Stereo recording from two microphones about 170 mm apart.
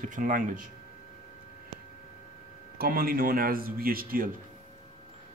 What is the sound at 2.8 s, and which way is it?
Speech, 60° right (ahead or behind).